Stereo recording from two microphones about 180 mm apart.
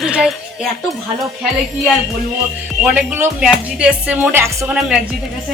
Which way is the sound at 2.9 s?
10° right (ahead or behind).